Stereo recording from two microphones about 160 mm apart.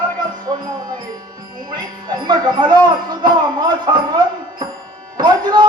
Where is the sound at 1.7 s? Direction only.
25° right (ahead or behind).